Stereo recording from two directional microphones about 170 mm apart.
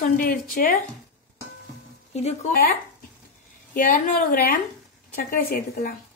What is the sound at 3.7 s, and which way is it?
A woman's voice, 55° left (ahead or behind).